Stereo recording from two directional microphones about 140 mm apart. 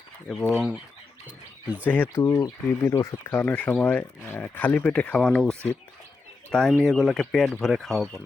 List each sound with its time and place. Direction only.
0.3 s speech: centre (ahead or behind)
1.9 s speech: 10° left (ahead or behind)
2.2 s speech: 20° left (ahead or behind); by 8.2 s centre (ahead or behind)